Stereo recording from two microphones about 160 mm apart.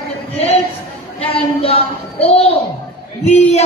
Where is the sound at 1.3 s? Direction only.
35° left (ahead or behind).